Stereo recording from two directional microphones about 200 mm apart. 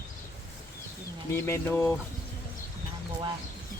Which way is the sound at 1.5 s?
10° left (ahead or behind).